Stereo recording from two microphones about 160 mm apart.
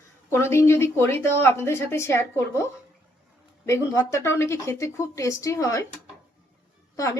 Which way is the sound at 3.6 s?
20° left (ahead or behind).